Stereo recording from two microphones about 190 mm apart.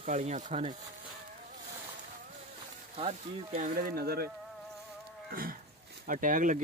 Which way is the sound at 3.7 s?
50° right (ahead or behind).